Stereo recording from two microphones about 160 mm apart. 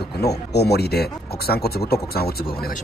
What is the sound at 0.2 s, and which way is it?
Speech, 90° left.